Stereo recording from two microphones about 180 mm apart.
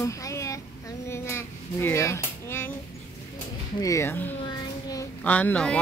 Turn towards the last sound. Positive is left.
turn(degrees=5)  # may be behind; listen again after turning